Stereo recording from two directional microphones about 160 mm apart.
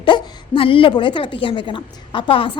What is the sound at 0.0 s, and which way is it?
A woman's voice, 35° left (ahead or behind).